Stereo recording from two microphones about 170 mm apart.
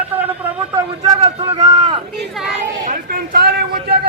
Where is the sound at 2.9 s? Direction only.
60° right (ahead or behind).